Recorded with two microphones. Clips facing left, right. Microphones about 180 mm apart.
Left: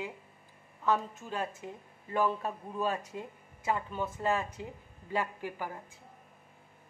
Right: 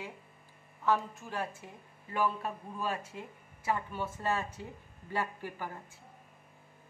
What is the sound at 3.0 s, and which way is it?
A woman's voice, 20° left (ahead or behind).